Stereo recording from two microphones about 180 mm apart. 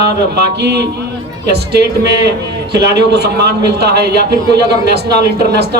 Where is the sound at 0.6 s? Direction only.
65° right (ahead or behind).